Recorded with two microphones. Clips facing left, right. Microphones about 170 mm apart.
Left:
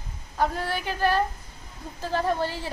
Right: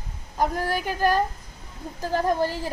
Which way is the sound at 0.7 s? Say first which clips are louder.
Right 3 dB; 45° right (ahead or behind).